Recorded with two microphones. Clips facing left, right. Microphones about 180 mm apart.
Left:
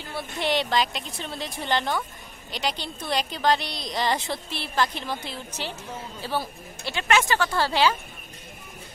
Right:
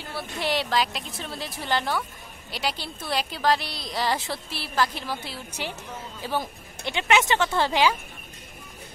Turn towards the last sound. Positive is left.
turn(degrees=-15)  # may be behind; listen again after turning